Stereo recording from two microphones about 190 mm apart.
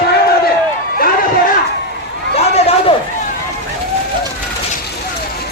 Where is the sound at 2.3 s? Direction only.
35° left (ahead or behind).